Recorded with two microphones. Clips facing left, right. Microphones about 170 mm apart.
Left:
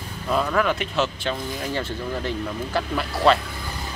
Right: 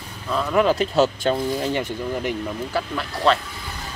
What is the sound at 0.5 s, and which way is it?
Speech, 35° right (ahead or behind).